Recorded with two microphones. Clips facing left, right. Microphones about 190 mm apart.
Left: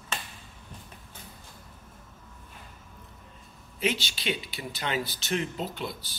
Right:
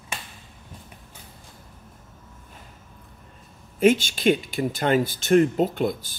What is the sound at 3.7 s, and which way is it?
Speech, 50° right (ahead or behind).